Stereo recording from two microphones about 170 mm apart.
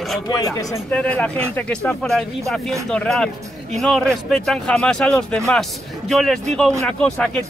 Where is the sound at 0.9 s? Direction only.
5° left (ahead or behind).